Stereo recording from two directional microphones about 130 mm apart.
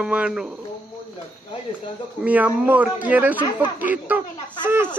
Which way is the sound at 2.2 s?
10° right (ahead or behind).